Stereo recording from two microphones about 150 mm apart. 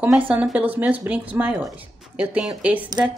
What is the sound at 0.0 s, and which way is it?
Speech, 10° right (ahead or behind).